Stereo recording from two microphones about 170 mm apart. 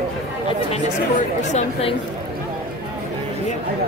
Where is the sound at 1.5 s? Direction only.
40° left (ahead or behind).